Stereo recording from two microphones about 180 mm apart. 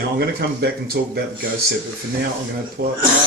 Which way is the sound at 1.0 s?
65° right (ahead or behind).